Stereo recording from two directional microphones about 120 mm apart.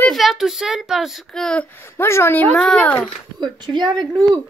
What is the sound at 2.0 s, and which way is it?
Groan, 20° left (ahead or behind).